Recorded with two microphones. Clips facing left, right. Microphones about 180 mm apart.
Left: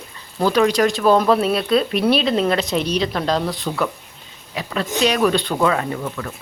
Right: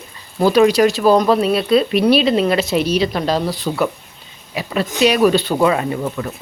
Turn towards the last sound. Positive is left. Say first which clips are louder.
# right 4 dB
turn(degrees=-20)  # may be behind; listen again after turning